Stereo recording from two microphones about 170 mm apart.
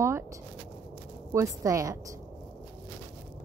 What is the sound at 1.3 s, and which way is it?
Speech, 15° right (ahead or behind).